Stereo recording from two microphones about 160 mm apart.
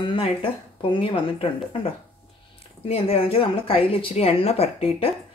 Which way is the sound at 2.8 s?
35° left (ahead or behind).